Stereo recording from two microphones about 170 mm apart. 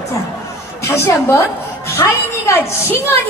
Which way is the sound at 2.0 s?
15° left (ahead or behind).